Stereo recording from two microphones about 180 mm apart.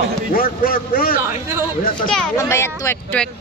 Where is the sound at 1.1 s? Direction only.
15° right (ahead or behind).